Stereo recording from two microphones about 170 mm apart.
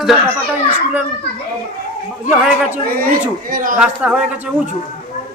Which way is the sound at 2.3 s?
5° right (ahead or behind).